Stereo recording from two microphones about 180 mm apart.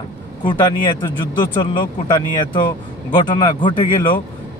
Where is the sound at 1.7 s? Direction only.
25° left (ahead or behind).